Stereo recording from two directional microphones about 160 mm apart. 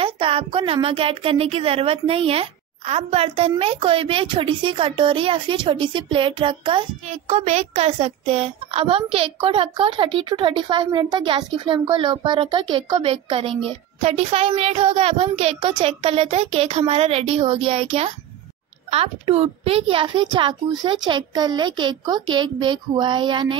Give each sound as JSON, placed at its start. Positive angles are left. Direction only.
{"t": 0.0, "sound": "a woman's voice", "side_deg": -35}